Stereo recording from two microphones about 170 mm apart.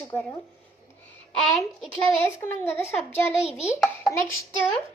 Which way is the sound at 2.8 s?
40° left (ahead or behind).